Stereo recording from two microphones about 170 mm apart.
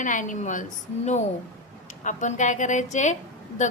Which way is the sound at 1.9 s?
45° left (ahead or behind).